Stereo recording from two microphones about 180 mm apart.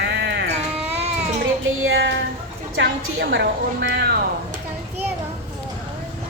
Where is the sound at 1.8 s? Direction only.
80° right.